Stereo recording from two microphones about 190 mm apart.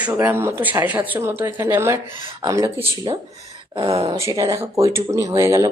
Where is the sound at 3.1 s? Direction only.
30° right (ahead or behind).